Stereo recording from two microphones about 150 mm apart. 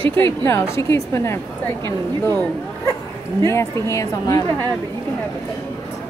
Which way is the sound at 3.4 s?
20° left (ahead or behind).